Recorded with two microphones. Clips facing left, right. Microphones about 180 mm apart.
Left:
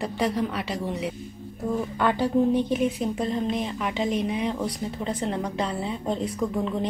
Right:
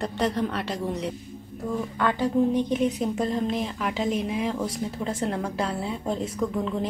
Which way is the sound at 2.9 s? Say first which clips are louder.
Right 1 dB; centre (ahead or behind).